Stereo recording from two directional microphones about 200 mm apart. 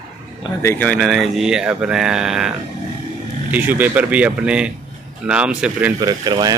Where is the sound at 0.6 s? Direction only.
10° left (ahead or behind); by 5.9 s 5° right (ahead or behind).